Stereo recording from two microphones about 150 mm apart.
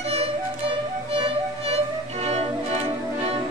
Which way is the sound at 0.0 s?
45° right (ahead or behind).